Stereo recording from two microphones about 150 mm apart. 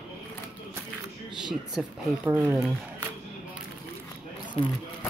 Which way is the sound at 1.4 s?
5° right (ahead or behind).